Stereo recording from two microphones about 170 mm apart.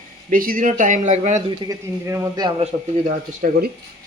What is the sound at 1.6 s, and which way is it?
Speech, 20° right (ahead or behind).